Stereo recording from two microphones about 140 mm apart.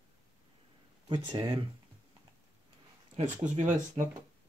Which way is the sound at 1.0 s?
35° right (ahead or behind).